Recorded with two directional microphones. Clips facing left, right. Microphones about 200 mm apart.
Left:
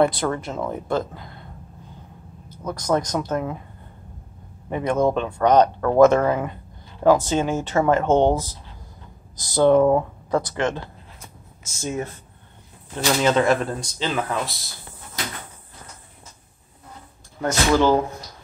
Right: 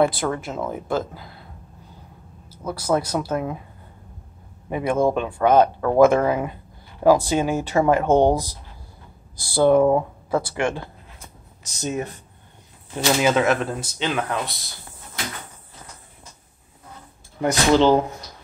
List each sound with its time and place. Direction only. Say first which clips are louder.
0.0 s speech: even; 5° right (ahead or behind)
2.5 s speech: even; 10° right (ahead or behind)
4.6 s speech: even; 10° right (ahead or behind)
9.5 s speech: even; 10° right (ahead or behind)
11.8 s speech: right 1 dB; 20° right (ahead or behind)
12.9 s speech: even; 10° right (ahead or behind)
17.4 s speech: right 2 dB; 20° right (ahead or behind)